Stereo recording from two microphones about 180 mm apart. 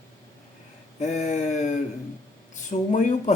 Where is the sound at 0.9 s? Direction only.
40° left (ahead or behind).